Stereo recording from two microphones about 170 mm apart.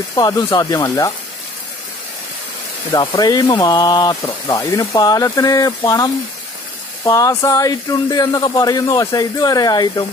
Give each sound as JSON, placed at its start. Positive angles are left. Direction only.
{"t": 0.1, "sound": "speech", "side_deg": 20}
{"t": 2.9, "sound": "speech", "side_deg": 25}
{"t": 7.1, "sound": "speech", "side_deg": 20}